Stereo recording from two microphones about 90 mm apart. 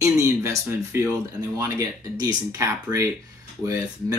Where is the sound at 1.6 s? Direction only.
40° right (ahead or behind).